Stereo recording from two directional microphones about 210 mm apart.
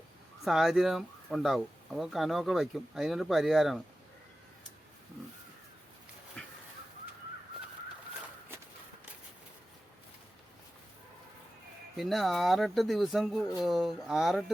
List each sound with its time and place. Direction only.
0.4 s speech: centre (ahead or behind)
6.4 s a sound: 5° left (ahead or behind)
11.9 s speech: centre (ahead or behind)